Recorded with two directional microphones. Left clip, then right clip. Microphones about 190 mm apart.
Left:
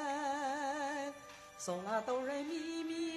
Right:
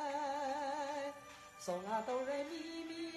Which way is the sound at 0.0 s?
45° left (ahead or behind).